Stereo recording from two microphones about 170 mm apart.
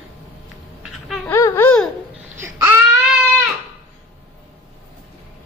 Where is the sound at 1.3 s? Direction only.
15° left (ahead or behind).